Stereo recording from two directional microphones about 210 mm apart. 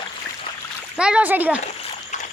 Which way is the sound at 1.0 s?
5° right (ahead or behind).